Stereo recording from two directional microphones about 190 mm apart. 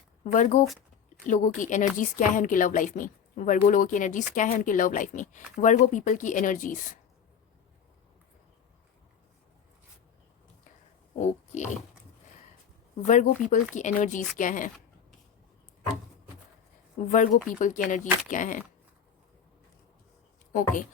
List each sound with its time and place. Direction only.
0.3 s a woman's voice: 40° left (ahead or behind)
11.2 s speech: 35° left (ahead or behind)
13.1 s a woman's voice: 40° left (ahead or behind)
17.1 s a woman's voice: 40° left (ahead or behind)
20.5 s a woman's voice: 45° left (ahead or behind)